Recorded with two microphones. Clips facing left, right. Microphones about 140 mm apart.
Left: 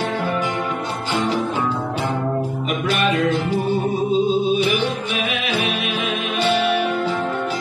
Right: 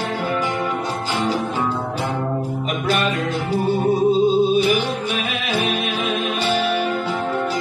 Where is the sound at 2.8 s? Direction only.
40° right (ahead or behind).